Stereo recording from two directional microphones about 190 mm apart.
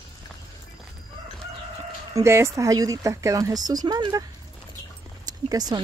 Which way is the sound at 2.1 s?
15° right (ahead or behind).